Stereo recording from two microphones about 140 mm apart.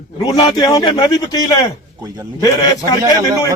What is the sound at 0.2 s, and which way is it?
A man's voice, 30° left (ahead or behind).